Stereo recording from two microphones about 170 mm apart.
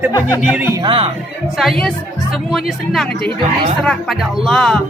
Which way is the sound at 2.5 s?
Centre (ahead or behind).